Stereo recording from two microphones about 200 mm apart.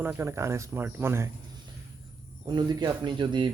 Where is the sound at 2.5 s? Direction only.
20° right (ahead or behind).